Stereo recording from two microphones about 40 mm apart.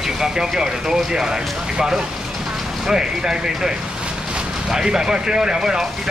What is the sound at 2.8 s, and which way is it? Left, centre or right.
Speech, centre.